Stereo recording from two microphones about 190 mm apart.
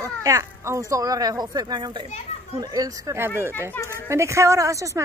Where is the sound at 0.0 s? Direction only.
15° right (ahead or behind).